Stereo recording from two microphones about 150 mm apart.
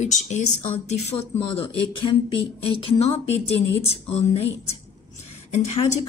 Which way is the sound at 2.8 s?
40° left (ahead or behind).